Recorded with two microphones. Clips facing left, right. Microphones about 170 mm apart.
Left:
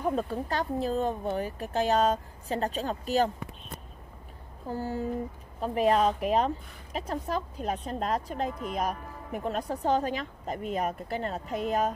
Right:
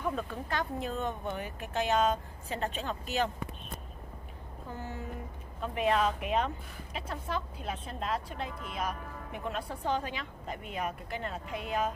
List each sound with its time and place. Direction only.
0.0 s a woman's voice: 35° left (ahead or behind)
4.6 s a woman's voice: 35° left (ahead or behind)